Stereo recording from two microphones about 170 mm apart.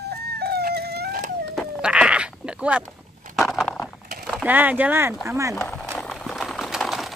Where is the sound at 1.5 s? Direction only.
Centre (ahead or behind).